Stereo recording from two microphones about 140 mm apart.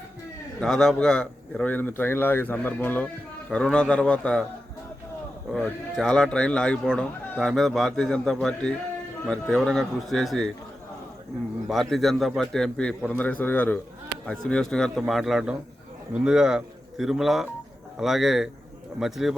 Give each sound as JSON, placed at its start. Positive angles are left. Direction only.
{"t": 0.6, "sound": "a man's voice", "side_deg": 5}
{"t": 5.5, "sound": "speech", "side_deg": 5}
{"t": 11.7, "sound": "speech", "side_deg": 0}